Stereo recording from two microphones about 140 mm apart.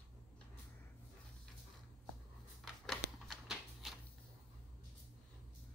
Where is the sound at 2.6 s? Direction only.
Centre (ahead or behind).